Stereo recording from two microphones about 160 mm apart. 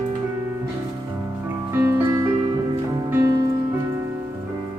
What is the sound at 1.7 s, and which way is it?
Music, 15° right (ahead or behind).